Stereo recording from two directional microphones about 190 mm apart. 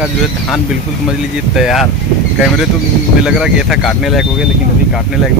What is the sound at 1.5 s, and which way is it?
Speech, centre (ahead or behind).